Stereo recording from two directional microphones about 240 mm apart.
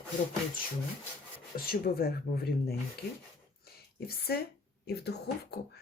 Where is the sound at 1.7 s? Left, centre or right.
Left.